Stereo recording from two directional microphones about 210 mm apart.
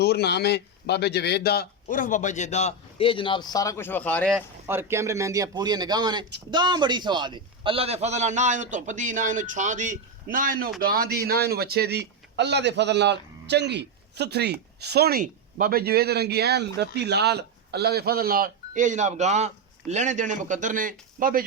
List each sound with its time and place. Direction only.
0.0 s a man's voice: 50° left (ahead or behind); by 4.4 s 5° left (ahead or behind)
4.4 s a man's voice: 10° right (ahead or behind); by 21.4 s 40° right (ahead or behind)